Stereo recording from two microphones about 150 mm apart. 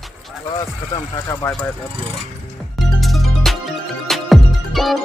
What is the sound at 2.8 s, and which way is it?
Music, centre (ahead or behind).